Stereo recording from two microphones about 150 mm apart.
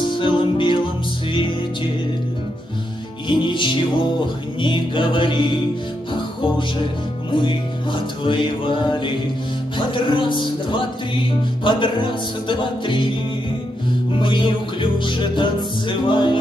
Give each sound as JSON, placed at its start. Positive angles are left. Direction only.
{"t": 0.0, "sound": "music", "side_deg": 35}
{"t": 3.3, "sound": "music", "side_deg": 30}
{"t": 7.2, "sound": "music", "side_deg": 35}
{"t": 14.2, "sound": "music", "side_deg": 35}